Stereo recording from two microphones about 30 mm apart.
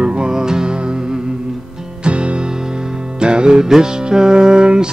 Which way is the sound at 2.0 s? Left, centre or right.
Right.